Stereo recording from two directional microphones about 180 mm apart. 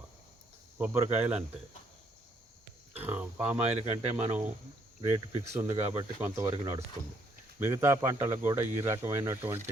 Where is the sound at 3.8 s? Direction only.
40° right (ahead or behind).